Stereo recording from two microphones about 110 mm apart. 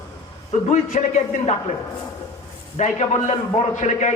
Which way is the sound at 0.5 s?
90° left.